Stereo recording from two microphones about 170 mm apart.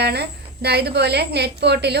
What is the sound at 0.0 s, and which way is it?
A woman's voice, 75° right (ahead or behind).